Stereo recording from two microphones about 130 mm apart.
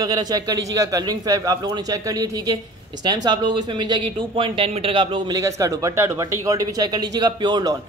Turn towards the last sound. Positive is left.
turn(degrees=-30)  # may be behind; listen again after turning